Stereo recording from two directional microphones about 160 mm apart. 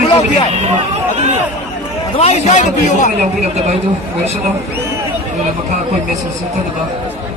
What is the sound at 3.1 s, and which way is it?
Speech, 45° right (ahead or behind).